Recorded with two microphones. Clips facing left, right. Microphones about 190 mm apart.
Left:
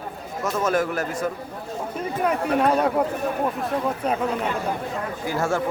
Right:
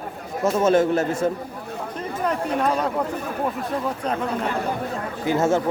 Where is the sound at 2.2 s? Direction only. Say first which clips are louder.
Left 2 dB; 10° left (ahead or behind).